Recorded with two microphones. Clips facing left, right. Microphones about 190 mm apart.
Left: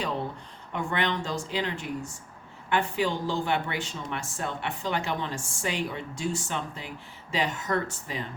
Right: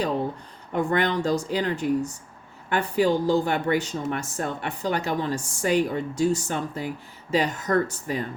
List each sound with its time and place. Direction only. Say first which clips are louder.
0.7 s a woman's voice: right 6 dB; 40° right (ahead or behind)